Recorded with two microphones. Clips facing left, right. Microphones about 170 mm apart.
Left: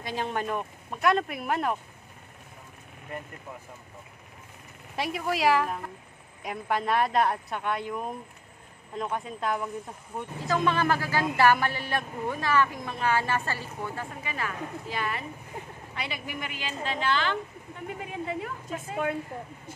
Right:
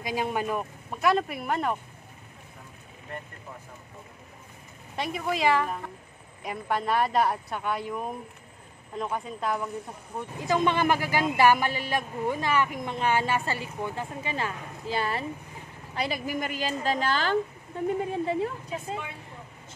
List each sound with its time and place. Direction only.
0.0 s speech: 10° right (ahead or behind)
4.9 s speech: centre (ahead or behind)
10.4 s a woman's voice: 20° right (ahead or behind)